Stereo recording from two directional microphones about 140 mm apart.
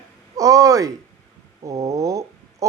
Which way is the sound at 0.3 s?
25° right (ahead or behind).